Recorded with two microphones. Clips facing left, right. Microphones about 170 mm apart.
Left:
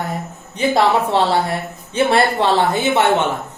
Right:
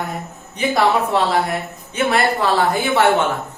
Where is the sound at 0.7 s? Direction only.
30° left (ahead or behind).